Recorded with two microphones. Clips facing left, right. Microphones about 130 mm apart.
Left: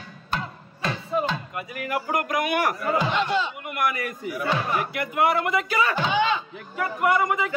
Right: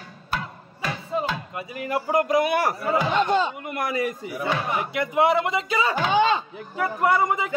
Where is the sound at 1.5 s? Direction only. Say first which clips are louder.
Right 1 dB; 30° right (ahead or behind).